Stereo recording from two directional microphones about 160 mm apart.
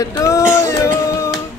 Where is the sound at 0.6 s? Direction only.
20° left (ahead or behind).